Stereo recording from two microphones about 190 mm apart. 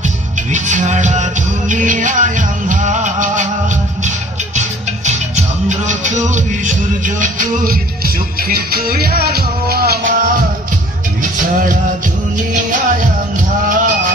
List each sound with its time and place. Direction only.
0.0 s music: 40° right (ahead or behind)
11.3 s music: 45° right (ahead or behind)